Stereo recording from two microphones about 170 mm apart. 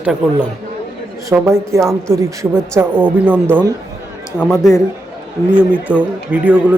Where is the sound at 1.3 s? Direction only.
15° right (ahead or behind).